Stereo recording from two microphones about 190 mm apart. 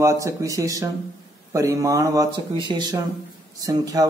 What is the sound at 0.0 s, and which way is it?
Speech, 15° right (ahead or behind).